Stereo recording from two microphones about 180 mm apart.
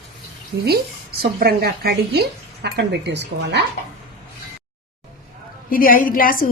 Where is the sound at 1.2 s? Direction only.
55° right (ahead or behind).